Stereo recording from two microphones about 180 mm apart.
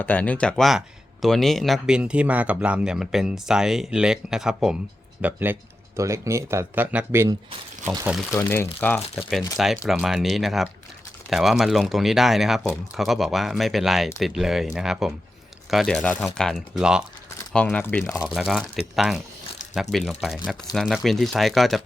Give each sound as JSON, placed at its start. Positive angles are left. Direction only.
{"t": 0.0, "sound": "speech", "side_deg": 10}
{"t": 8.3, "sound": "speech", "side_deg": 15}
{"t": 9.6, "sound": "speech", "side_deg": 0}
{"t": 17.5, "sound": "speech", "side_deg": 5}
{"t": 18.3, "sound": "speech", "side_deg": 0}